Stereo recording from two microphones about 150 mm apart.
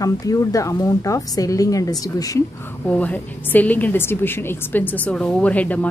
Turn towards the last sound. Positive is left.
turn(degrees=10)  # may be behind; listen again after turning